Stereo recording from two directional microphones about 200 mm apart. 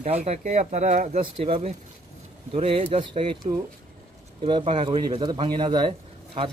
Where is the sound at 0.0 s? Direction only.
35° right (ahead or behind).